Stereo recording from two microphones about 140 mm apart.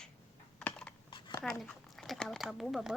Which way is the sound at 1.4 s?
5° left (ahead or behind).